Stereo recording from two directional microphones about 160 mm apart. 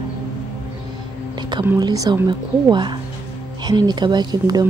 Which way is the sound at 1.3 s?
25° right (ahead or behind).